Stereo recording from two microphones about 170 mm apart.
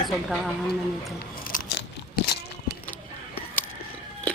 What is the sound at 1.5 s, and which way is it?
Biting, 50° left (ahead or behind).